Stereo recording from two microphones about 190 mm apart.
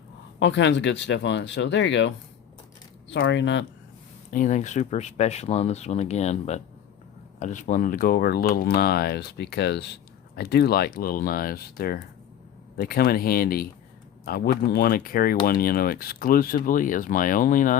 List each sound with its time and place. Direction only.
0.3 s speech: 70° left (ahead or behind)
4.3 s speech: 45° left (ahead or behind)